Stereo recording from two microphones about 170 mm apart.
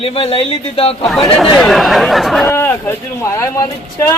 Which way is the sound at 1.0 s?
Centre (ahead or behind).